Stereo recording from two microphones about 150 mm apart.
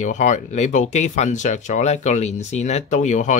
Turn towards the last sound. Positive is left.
turn(degrees=55)  # may be behind; listen again after turning